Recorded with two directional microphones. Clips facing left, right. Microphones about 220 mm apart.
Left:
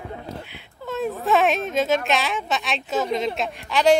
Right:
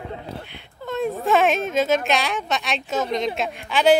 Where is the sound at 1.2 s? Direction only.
Centre (ahead or behind).